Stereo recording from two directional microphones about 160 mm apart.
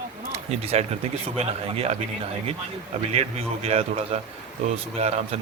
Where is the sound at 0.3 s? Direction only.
40° right (ahead or behind).